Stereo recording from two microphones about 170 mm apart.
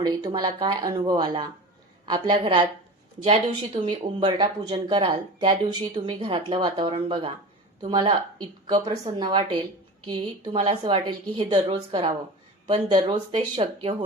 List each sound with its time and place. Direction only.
0.0 s speech: 25° right (ahead or behind)
3.8 s speech: 25° right (ahead or behind)